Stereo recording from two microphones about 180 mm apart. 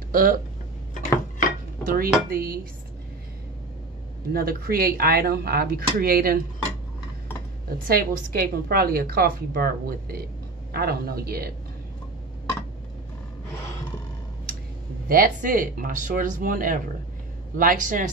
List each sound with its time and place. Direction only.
0.1 s speech: 50° right (ahead or behind)
1.9 s a woman's voice: 55° right (ahead or behind)
4.3 s a woman's voice: 55° right (ahead or behind)
7.9 s a woman's voice: 55° right (ahead or behind)
15.0 s speech: 50° right (ahead or behind)